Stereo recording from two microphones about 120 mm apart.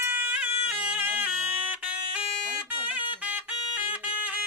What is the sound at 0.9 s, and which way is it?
Bagpipes, 15° right (ahead or behind).